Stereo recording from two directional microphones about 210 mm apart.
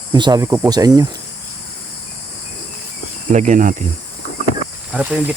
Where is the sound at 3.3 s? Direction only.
35° right (ahead or behind).